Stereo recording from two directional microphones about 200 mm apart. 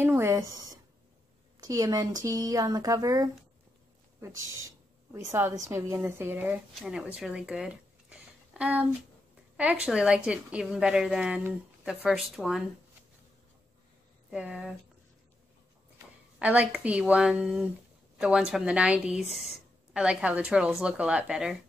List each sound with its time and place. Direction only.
0.0 s speech: 10° right (ahead or behind)
4.6 s a woman's voice: 15° right (ahead or behind)
14.3 s a woman's voice: 5° right (ahead or behind)
16.3 s a woman's voice: 5° right (ahead or behind)